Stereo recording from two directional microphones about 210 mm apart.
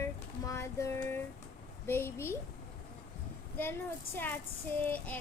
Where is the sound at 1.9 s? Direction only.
10° left (ahead or behind).